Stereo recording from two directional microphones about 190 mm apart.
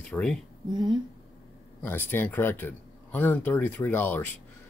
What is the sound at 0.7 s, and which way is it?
Speech, 20° right (ahead or behind).